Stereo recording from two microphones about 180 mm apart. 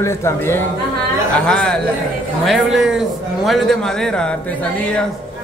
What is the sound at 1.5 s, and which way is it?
A man's voice, 5° left (ahead or behind).